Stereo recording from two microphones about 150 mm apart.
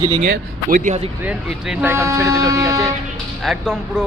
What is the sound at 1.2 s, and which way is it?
Speech, 10° right (ahead or behind).